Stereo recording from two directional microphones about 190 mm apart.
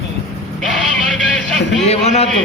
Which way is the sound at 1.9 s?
35° left (ahead or behind).